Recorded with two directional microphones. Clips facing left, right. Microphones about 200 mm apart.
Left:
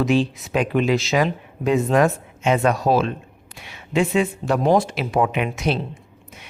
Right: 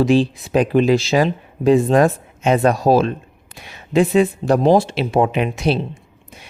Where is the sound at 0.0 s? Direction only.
35° right (ahead or behind).